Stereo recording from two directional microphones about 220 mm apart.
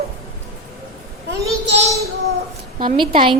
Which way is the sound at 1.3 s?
50° right (ahead or behind).